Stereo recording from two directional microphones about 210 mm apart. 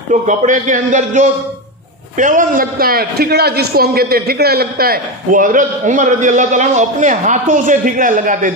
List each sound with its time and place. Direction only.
0.1 s a man's voice: 35° right (ahead or behind)